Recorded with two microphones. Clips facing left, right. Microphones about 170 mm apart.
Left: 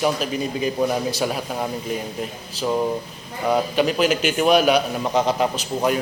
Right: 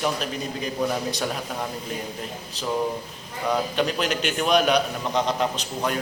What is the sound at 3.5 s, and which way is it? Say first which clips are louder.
A man's voice: left 4 dB; 5° left (ahead or behind).